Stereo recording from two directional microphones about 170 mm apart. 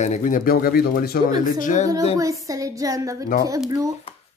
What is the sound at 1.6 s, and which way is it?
Speech, 45° left (ahead or behind).